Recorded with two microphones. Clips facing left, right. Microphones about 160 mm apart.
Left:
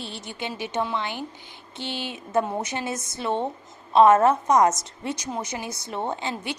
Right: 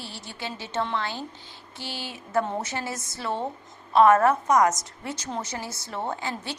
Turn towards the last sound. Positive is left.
turn(degrees=20)  # may be behind; listen again after turning